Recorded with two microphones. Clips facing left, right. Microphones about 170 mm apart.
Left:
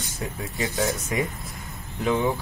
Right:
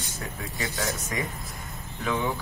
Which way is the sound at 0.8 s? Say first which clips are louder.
Left 6 dB; 15° left (ahead or behind).